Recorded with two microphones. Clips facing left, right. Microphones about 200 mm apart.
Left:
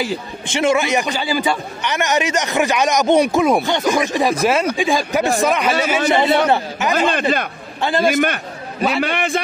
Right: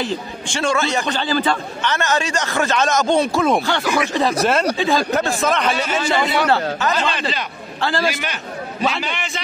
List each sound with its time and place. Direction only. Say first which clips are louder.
0.5 s a man's voice: left 4 dB; 20° left (ahead or behind)
6.0 s a man's voice: left 3 dB; 25° left (ahead or behind)
7.1 s a man's voice: left 5 dB; 50° left (ahead or behind)